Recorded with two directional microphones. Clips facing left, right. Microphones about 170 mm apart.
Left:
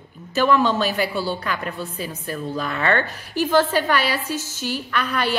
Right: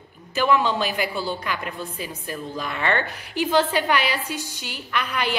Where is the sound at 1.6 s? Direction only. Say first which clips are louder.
Left 3 dB; 40° left (ahead or behind).